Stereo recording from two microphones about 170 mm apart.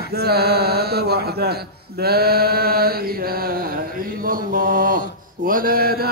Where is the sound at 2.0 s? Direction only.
65° right (ahead or behind).